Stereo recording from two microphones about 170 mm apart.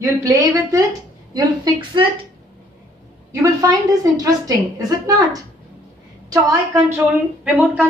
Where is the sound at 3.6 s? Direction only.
20° right (ahead or behind).